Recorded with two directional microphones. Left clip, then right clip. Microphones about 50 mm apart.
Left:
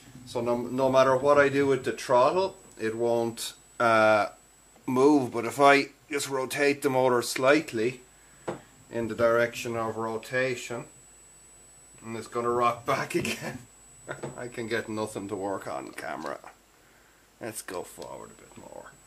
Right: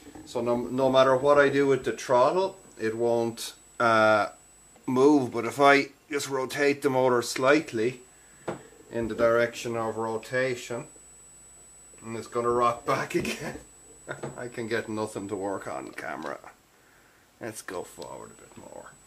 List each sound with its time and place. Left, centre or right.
0.3 s speech: centre
0.6 s speech: centre
8.5 s speech: centre
12.0 s speech: centre
14.3 s speech: centre
17.4 s speech: centre
17.6 s speech: left